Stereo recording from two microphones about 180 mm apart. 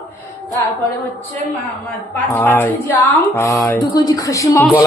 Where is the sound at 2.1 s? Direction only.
10° left (ahead or behind).